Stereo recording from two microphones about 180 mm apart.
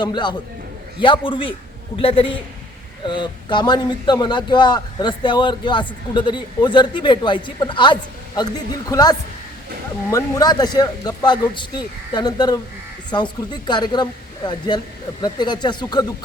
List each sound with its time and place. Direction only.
0.0 s a man's voice: 25° left (ahead or behind)